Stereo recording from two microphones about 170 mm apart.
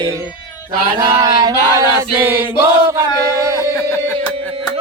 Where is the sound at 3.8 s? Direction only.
15° left (ahead or behind).